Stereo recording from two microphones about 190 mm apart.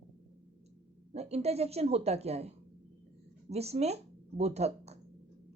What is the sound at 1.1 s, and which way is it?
A woman's voice, 35° right (ahead or behind).